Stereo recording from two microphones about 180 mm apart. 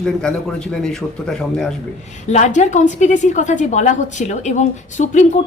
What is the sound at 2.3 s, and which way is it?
A woman's voice, 40° left (ahead or behind).